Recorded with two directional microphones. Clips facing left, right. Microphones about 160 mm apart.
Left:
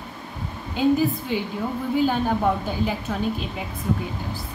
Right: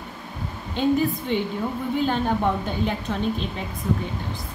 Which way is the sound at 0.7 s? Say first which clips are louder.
Left 1 dB; 5° left (ahead or behind).